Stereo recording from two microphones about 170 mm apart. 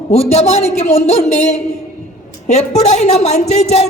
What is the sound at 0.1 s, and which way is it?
A man's voice, 40° left (ahead or behind).